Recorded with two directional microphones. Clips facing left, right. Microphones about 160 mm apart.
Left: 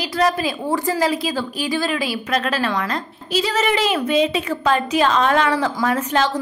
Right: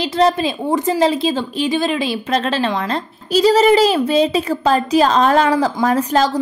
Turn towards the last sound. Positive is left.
turn(degrees=-35)  # may be behind; listen again after turning